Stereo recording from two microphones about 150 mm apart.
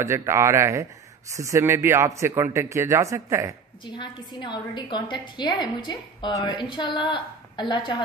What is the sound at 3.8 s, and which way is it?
A woman's voice, 30° left (ahead or behind).